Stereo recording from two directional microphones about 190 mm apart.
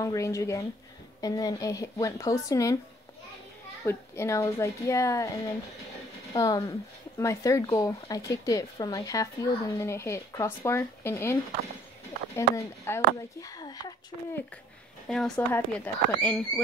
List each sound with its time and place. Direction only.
0.0 s speech: 15° left (ahead or behind)
3.8 s speech: 15° left (ahead or behind)
12.4 s speech: 15° left (ahead or behind)
15.0 s speech: 5° left (ahead or behind)